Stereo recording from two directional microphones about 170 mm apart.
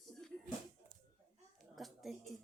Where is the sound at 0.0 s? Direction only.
5° left (ahead or behind).